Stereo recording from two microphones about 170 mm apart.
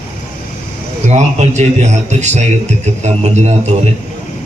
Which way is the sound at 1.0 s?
40° right (ahead or behind).